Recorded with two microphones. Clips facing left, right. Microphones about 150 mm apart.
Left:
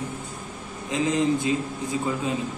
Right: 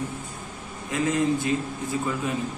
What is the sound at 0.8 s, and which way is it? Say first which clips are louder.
Speech: left 1 dB; 20° left (ahead or behind).